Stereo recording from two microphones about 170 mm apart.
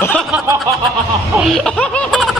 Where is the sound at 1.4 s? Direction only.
5° left (ahead or behind).